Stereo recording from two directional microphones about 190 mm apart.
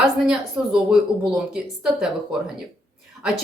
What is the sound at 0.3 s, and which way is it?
A woman's voice, 5° right (ahead or behind).